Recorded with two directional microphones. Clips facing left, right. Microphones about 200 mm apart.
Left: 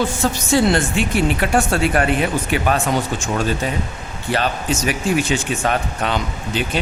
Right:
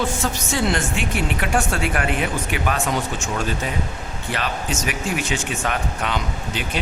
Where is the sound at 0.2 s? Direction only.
35° left (ahead or behind).